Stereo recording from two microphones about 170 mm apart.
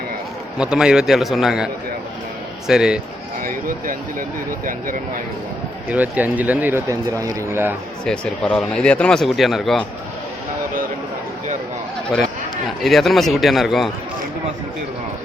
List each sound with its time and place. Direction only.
0.6 s speech: 5° right (ahead or behind)
3.4 s speech: 55° right (ahead or behind)
5.9 s speech: 10° right (ahead or behind)
8.0 s speech: 5° left (ahead or behind)
12.6 s speech: centre (ahead or behind)